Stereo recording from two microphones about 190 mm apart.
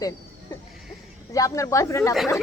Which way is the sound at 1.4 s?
15° left (ahead or behind).